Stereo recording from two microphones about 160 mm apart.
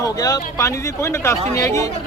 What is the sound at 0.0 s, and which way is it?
A man's voice, 20° left (ahead or behind).